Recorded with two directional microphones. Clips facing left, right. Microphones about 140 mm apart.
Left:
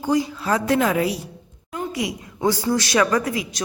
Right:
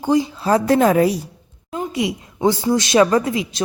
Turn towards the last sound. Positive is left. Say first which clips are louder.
# right 4 dB
turn(degrees=-25)  # may be behind; listen again after turning